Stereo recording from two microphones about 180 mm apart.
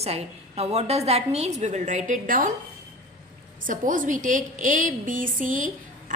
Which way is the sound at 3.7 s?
45° right (ahead or behind).